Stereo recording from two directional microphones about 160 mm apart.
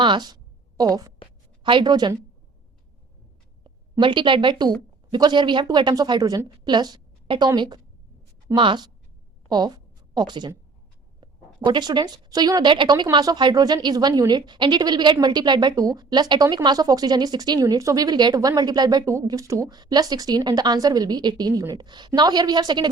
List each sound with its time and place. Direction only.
0.0 s a woman's voice: 25° right (ahead or behind)
4.0 s a woman's voice: 30° right (ahead or behind)